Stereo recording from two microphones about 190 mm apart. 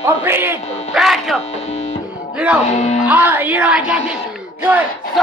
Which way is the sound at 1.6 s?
35° left (ahead or behind).